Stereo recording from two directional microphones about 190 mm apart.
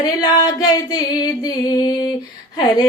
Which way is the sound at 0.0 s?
20° left (ahead or behind).